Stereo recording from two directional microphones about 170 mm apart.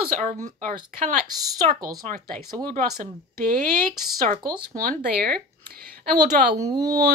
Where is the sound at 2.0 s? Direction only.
50° right (ahead or behind).